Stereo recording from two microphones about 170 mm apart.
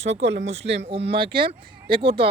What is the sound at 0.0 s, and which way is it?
Speech, 40° right (ahead or behind).